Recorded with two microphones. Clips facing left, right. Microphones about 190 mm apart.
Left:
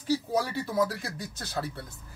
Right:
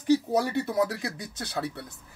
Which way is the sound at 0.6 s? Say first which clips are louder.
Right 2 dB; 65° right (ahead or behind).